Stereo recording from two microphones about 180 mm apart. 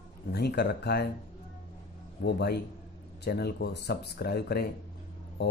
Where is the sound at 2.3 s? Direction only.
65° left (ahead or behind).